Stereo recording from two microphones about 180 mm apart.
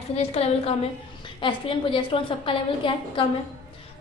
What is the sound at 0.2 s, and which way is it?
A woman's voice, 35° left (ahead or behind).